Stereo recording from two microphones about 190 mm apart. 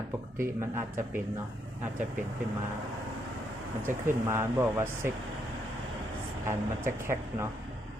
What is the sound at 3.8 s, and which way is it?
Speech, 15° right (ahead or behind).